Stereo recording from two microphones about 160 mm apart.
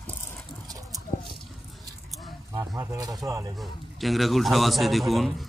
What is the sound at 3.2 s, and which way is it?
Speech, 20° right (ahead or behind).